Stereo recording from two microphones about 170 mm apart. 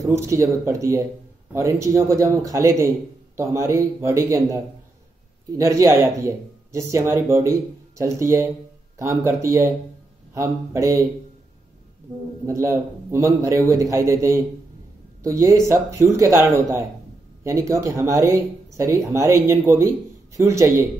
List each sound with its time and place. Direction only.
0.0 s a man's voice: 15° right (ahead or behind)
5.6 s a man's voice: 20° right (ahead or behind)
12.4 s a man's voice: 15° right (ahead or behind)